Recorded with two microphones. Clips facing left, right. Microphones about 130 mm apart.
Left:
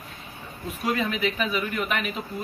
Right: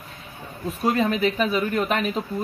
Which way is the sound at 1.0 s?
40° right (ahead or behind).